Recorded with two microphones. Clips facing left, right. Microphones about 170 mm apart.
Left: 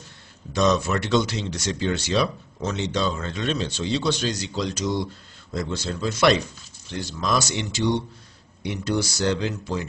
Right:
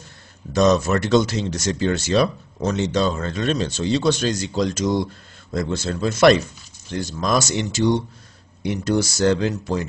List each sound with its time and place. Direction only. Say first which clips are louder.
0.5 s speech: right 4 dB; 45° right (ahead or behind)